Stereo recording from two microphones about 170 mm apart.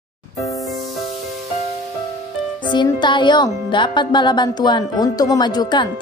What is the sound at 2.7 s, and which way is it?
Speech, 25° left (ahead or behind).